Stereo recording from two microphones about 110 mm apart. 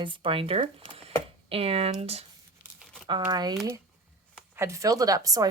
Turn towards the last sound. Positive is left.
turn(degrees=-35)  # may be behind; listen again after turning